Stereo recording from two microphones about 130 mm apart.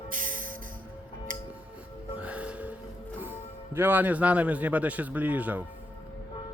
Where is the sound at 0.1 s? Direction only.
90° right.